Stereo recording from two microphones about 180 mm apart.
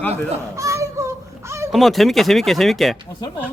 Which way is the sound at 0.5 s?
15° right (ahead or behind).